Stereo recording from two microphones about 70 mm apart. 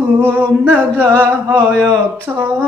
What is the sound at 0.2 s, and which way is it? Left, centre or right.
Singing, right.